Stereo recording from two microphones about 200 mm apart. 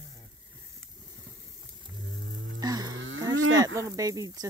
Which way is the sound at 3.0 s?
85° right.